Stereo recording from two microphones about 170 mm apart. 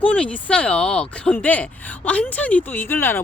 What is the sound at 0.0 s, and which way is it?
Speech, 10° left (ahead or behind).